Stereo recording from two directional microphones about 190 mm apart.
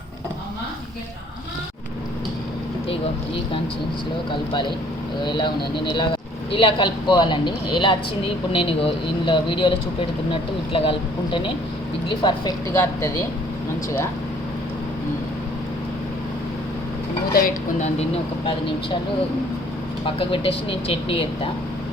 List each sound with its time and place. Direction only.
5.2 s speech: 25° left (ahead or behind)
17.3 s speech: 45° left (ahead or behind)
20.1 s speech: 30° left (ahead or behind)